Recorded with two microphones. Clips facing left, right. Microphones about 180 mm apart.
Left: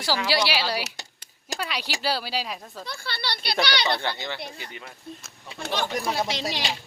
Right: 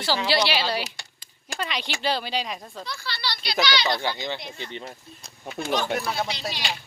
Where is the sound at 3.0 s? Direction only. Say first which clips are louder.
Left 1 dB; 55° left (ahead or behind).